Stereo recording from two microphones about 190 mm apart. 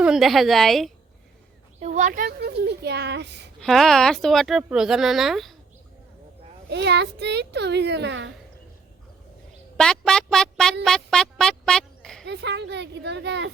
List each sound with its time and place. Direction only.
0.0 s speech: centre (ahead or behind)
1.8 s a child's voice: 40° right (ahead or behind); by 3.4 s 65° right (ahead or behind)
3.6 s speech: centre (ahead or behind)
6.7 s a child's voice: 65° right (ahead or behind)
9.7 s speech: 5° left (ahead or behind)
12.2 s a child's voice: 65° right (ahead or behind)